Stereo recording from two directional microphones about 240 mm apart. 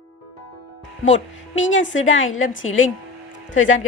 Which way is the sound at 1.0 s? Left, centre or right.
Left.